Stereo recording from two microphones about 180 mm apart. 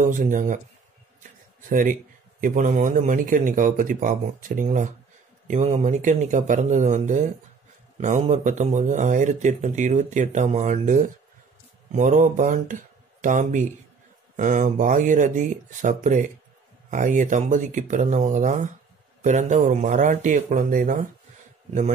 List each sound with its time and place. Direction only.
0.1 s speech: 45° right (ahead or behind)
1.7 s speech: 50° right (ahead or behind)